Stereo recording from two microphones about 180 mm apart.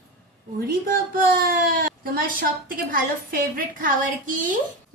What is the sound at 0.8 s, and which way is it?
A woman's voice, 55° right (ahead or behind).